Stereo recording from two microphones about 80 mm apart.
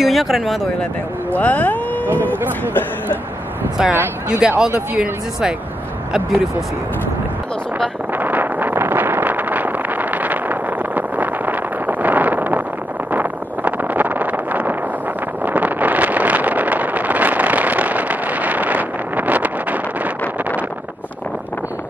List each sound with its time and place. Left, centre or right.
0.0 s speech: centre
1.3 s speech: left
2.3 s speech: right
3.8 s speech: centre
8.1 s wind noise: right
13.1 s vehicle: right